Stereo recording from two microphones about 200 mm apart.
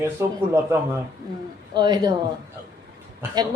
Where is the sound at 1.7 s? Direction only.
20° right (ahead or behind).